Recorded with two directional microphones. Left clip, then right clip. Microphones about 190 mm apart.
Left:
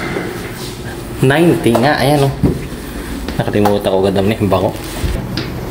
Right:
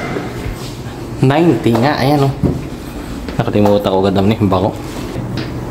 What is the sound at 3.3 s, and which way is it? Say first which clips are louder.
Speech: right 1 dB; 20° right (ahead or behind).